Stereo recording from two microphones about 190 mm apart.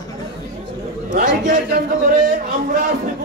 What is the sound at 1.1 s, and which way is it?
A man's voice, 45° right (ahead or behind).